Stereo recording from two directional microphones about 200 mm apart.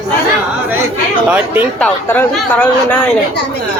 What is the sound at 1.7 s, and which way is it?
Speech, 10° left (ahead or behind).